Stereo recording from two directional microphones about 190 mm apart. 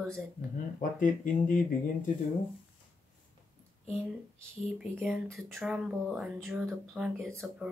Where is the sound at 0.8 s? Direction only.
45° left (ahead or behind).